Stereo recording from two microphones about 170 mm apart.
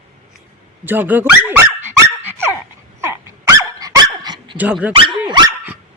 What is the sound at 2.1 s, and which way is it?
Dog, 15° right (ahead or behind).